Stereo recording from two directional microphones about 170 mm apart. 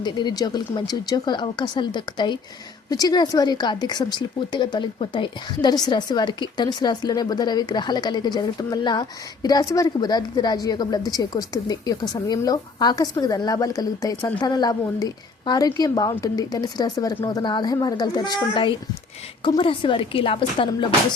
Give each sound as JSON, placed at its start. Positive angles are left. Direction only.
{"t": 0.0, "sound": "a woman's voice", "side_deg": 25}